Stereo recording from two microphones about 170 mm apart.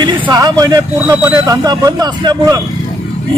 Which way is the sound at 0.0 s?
25° right (ahead or behind).